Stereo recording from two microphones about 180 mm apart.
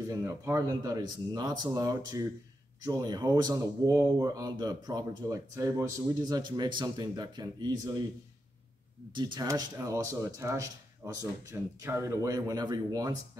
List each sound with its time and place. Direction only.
0.1 s speech: 15° right (ahead or behind)
9.1 s speech: 25° right (ahead or behind)